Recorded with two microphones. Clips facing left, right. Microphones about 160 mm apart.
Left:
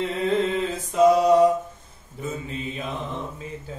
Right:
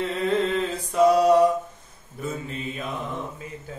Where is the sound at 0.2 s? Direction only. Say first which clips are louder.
Even; 20° left (ahead or behind).